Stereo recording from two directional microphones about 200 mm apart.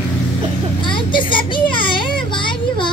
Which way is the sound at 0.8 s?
25° left (ahead or behind).